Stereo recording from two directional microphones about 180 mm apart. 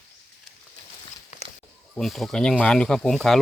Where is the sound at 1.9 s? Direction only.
Centre (ahead or behind).